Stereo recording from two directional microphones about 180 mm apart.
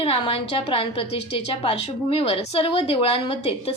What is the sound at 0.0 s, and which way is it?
A woman's voice, 30° left (ahead or behind).